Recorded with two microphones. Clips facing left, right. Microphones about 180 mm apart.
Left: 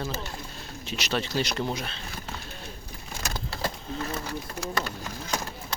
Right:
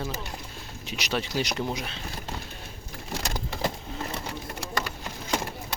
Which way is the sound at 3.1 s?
90° right.